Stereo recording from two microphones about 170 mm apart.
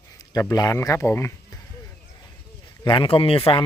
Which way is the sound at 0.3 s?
20° left (ahead or behind).